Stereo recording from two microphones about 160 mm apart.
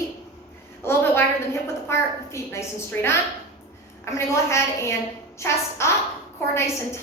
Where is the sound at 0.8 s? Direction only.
15° left (ahead or behind).